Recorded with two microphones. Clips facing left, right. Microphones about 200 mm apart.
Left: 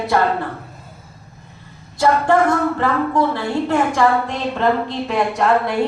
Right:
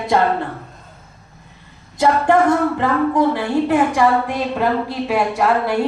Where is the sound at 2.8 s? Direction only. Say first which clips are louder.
Right 1 dB; 15° right (ahead or behind).